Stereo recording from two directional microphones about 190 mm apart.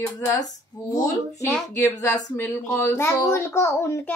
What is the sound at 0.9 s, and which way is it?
Speech, 20° left (ahead or behind).